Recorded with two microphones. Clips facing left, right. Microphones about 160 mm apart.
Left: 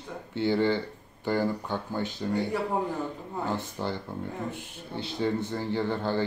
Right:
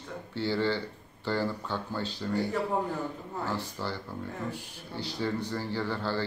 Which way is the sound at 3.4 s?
20° left (ahead or behind).